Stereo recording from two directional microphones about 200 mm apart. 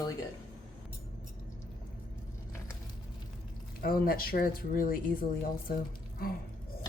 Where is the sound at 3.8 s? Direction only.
45° left (ahead or behind).